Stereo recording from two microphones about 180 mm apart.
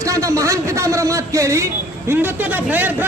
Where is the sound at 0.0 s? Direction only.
15° right (ahead or behind).